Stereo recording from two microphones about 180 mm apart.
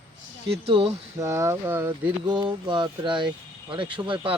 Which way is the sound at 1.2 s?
15° right (ahead or behind).